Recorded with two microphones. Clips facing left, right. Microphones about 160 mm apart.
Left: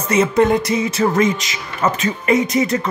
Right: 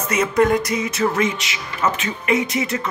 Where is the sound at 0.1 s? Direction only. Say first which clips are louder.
Left 3 dB; 25° left (ahead or behind).